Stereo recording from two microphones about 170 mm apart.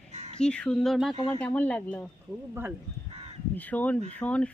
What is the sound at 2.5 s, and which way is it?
Speech, 10° right (ahead or behind).